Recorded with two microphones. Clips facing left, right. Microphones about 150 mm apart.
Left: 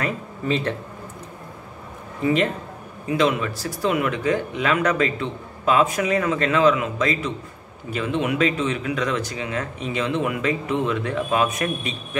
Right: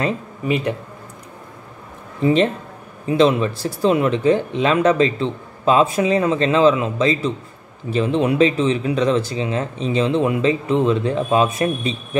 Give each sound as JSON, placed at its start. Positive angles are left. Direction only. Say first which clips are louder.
{"t": 0.5, "sound": "speech", "louder": "right 3 dB", "side_deg": -15}
{"t": 2.2, "sound": "speech", "louder": "right 4 dB", "side_deg": -25}